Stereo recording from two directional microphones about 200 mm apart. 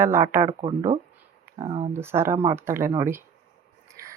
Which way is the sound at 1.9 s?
10° right (ahead or behind).